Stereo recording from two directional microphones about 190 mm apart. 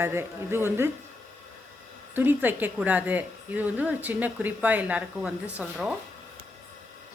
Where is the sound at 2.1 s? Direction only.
10° right (ahead or behind).